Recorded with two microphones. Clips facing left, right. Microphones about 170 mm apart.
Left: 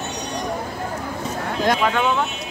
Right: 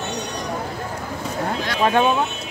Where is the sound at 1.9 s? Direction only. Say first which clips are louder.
Right 3 dB; 25° right (ahead or behind).